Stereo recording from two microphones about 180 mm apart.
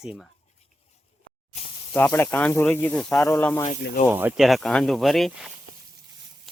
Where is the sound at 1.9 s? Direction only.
10° left (ahead or behind).